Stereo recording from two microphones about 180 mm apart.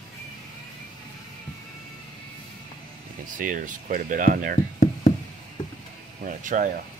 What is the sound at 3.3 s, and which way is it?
Speech, 50° right (ahead or behind).